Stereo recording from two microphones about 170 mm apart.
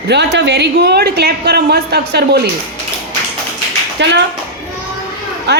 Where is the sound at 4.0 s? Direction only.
90° right.